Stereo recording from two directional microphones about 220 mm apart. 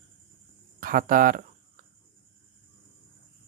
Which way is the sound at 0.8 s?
40° right (ahead or behind).